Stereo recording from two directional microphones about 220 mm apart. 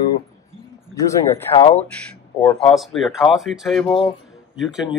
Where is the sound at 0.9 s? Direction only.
15° left (ahead or behind).